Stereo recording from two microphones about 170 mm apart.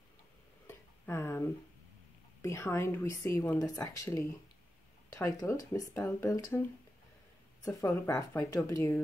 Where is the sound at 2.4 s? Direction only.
15° left (ahead or behind).